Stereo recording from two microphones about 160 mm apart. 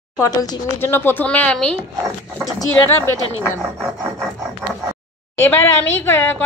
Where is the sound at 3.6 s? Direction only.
Centre (ahead or behind).